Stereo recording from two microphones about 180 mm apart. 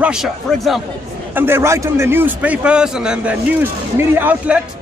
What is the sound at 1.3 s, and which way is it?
A man's voice, 10° right (ahead or behind).